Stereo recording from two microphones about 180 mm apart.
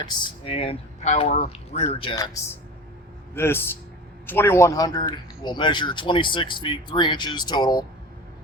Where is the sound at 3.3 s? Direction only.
10° left (ahead or behind).